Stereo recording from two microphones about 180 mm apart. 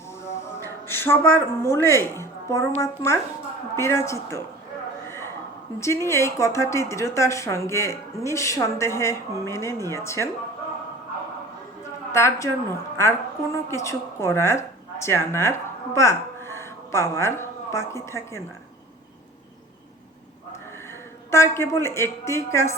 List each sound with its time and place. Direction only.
0.9 s a woman's voice: 10° left (ahead or behind)
5.8 s a woman's voice: 15° left (ahead or behind)
12.1 s a woman's voice: 15° left (ahead or behind)
21.2 s a woman's voice: 15° left (ahead or behind)